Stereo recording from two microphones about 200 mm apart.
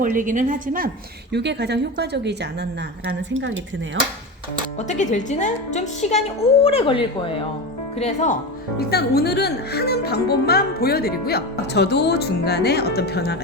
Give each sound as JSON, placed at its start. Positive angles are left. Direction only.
{"t": 0.0, "sound": "a woman's voice", "side_deg": -40}
{"t": 1.3, "sound": "speech", "side_deg": -55}
{"t": 4.8, "sound": "a woman's voice", "side_deg": 35}
{"t": 8.8, "sound": "speech", "side_deg": 50}